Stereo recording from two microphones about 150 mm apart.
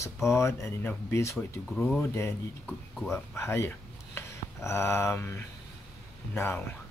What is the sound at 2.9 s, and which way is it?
Speech, centre (ahead or behind).